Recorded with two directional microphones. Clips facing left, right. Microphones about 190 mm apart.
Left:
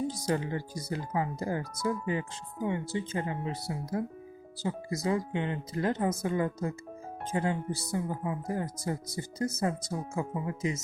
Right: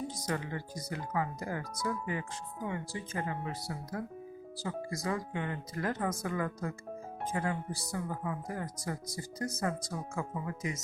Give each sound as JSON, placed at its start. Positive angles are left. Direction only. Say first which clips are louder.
{"t": 0.1, "sound": "speech", "louder": "left 5 dB", "side_deg": 30}
{"t": 5.0, "sound": "speech", "louder": "left 6 dB", "side_deg": 25}